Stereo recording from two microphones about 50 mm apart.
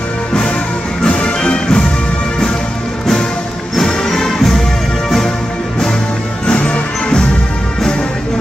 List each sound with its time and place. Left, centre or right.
1.0 s music: centre
3.7 s music: centre
6.4 s music: left